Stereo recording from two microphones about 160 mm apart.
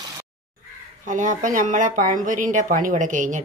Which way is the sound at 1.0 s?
50° right (ahead or behind).